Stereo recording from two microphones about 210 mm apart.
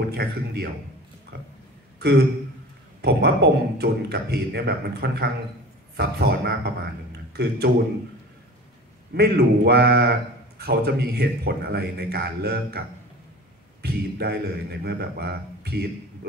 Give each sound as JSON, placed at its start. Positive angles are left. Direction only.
{"t": 0.1, "sound": "a man's voice", "side_deg": -50}
{"t": 2.0, "sound": "a man's voice", "side_deg": -50}
{"t": 9.1, "sound": "a man's voice", "side_deg": -50}
{"t": 13.8, "sound": "a man's voice", "side_deg": -50}